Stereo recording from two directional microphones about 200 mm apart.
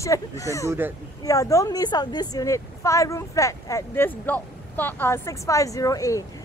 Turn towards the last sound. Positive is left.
turn(degrees=15)  # may be behind; listen again after turning